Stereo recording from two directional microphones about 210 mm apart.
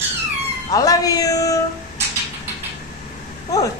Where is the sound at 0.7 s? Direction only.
15° left (ahead or behind).